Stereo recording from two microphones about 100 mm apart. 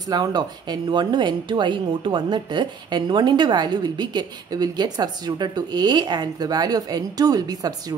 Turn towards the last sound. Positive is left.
turn(degrees=-40)  # may be behind; listen again after turning